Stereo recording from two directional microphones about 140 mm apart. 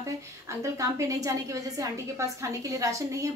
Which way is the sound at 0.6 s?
20° right (ahead or behind).